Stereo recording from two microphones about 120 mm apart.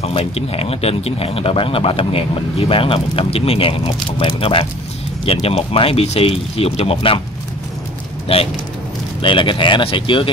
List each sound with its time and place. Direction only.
0.0 s speech: 55° left (ahead or behind)
8.3 s speech: 55° left (ahead or behind)